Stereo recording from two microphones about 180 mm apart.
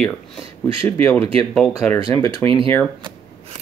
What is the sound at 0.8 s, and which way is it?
Speech, 15° left (ahead or behind).